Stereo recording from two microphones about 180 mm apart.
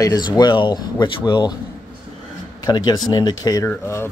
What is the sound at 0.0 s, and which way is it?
Speech, 20° left (ahead or behind).